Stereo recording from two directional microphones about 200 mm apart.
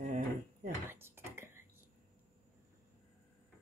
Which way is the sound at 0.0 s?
35° right (ahead or behind).